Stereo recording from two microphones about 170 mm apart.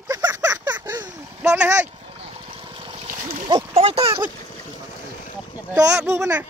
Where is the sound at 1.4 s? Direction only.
5° right (ahead or behind).